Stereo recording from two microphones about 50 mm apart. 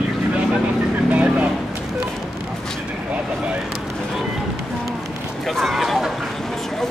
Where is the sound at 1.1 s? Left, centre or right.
Right.